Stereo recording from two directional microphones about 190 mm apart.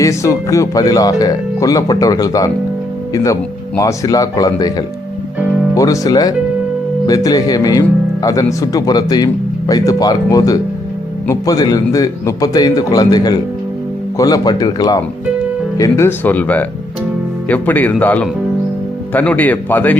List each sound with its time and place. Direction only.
0.0 s speech: 15° left (ahead or behind)
3.8 s speech: 20° left (ahead or behind)
5.7 s speech: 20° left (ahead or behind)